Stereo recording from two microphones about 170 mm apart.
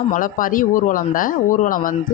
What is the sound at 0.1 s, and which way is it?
Speech, 55° left (ahead or behind).